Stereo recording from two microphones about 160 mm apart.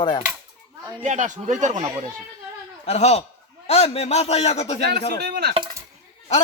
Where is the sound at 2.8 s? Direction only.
40° left (ahead or behind).